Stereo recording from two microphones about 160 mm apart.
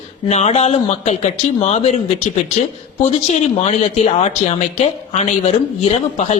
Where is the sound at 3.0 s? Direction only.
45° left (ahead or behind).